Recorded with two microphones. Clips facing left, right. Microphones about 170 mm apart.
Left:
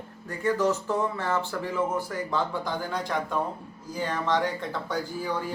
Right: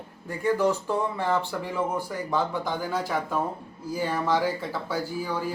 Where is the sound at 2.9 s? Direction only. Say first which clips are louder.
Right 2 dB; 5° right (ahead or behind).